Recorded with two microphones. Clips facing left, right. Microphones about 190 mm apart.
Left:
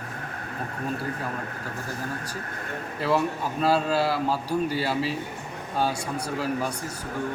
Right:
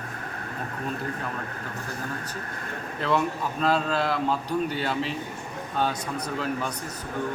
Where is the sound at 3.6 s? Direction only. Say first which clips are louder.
Left 2 dB; 5° left (ahead or behind).